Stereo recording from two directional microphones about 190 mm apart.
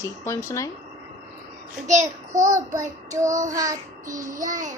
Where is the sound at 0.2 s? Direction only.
15° left (ahead or behind).